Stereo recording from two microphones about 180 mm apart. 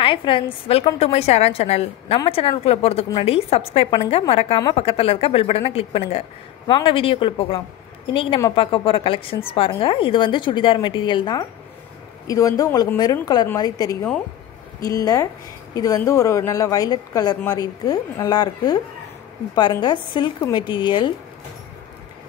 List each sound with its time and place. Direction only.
0.0 s a woman's voice: 30° left (ahead or behind)